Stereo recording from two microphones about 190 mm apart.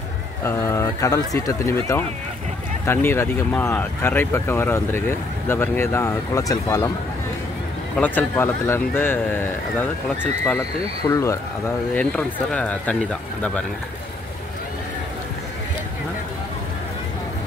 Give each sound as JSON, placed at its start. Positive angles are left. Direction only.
{"t": 0.4, "sound": "speech", "side_deg": 15}
{"t": 7.9, "sound": "speech", "side_deg": 10}